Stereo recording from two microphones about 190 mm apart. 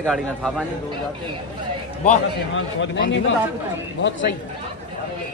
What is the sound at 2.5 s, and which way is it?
Speech, 70° left (ahead or behind).